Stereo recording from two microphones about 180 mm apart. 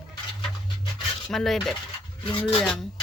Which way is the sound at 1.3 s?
Centre (ahead or behind).